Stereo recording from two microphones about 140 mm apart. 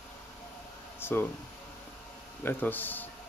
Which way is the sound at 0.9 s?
15° left (ahead or behind).